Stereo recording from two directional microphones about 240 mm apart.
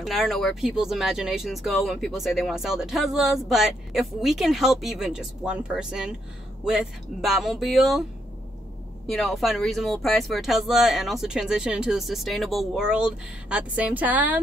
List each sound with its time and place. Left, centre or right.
0.0 s speech: centre
9.0 s speech: centre